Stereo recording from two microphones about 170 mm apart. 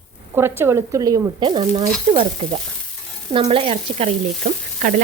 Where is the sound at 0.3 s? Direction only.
15° right (ahead or behind); by 2.6 s 30° right (ahead or behind).